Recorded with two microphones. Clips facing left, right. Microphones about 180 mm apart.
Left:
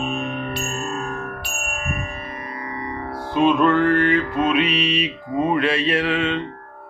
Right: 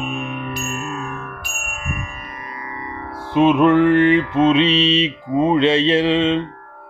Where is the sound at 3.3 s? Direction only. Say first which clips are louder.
Right 4 dB; 20° right (ahead or behind).